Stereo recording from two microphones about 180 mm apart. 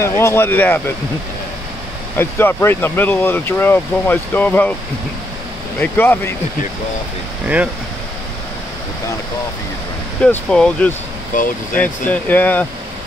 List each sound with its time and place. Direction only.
0.0 s speech: 15° left (ahead or behind)
2.1 s speech: 10° left (ahead or behind)
5.8 s speech: 10° left (ahead or behind)
7.4 s speech: 10° right (ahead or behind)
10.2 s speech: 5° left (ahead or behind)
11.3 s speech: 45° left (ahead or behind)
11.8 s speech: 10° left (ahead or behind)